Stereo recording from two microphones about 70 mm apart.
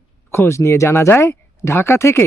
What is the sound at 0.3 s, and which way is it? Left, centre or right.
Speech, left.